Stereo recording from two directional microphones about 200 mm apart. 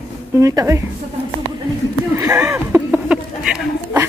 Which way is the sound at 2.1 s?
15° right (ahead or behind).